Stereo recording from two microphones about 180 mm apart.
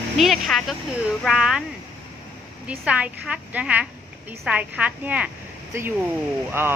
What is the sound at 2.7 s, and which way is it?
Speech, 5° right (ahead or behind).